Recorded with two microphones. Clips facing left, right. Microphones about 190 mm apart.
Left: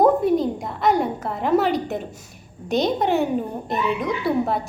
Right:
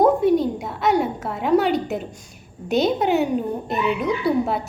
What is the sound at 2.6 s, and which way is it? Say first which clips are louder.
A child's voice: right 1 dB; centre (ahead or behind).